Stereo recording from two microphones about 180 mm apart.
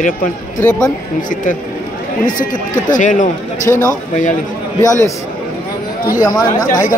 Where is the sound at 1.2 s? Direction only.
50° left (ahead or behind).